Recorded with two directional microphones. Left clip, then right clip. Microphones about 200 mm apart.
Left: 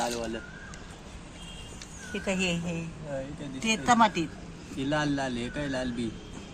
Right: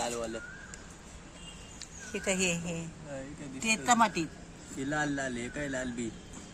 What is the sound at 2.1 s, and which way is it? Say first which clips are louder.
Speech: left 1 dB; 35° right (ahead or behind).